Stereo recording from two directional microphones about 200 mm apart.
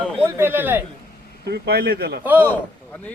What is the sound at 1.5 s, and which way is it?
Speech, 55° right (ahead or behind).